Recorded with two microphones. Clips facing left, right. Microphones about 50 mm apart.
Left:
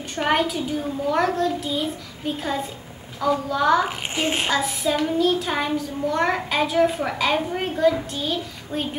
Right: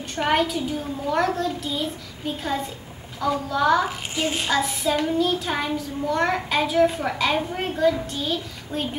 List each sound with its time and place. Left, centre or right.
0.1 s child singing: centre
4.1 s a child's voice: left
4.5 s child singing: centre
8.1 s a child's voice: centre